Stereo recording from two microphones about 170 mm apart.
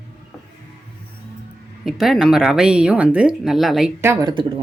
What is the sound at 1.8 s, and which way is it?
Speech, centre (ahead or behind).